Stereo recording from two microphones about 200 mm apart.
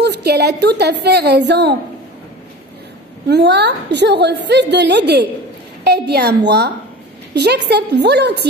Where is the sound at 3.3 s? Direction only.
60° right (ahead or behind).